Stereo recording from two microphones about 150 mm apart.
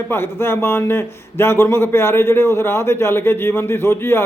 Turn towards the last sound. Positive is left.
turn(degrees=15)  # may be behind; listen again after turning